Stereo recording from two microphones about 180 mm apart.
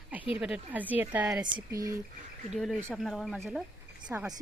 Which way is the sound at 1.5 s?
20° right (ahead or behind).